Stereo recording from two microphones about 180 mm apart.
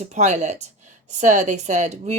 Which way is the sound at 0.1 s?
40° right (ahead or behind).